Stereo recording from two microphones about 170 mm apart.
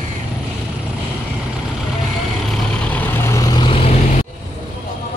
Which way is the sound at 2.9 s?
10° left (ahead or behind).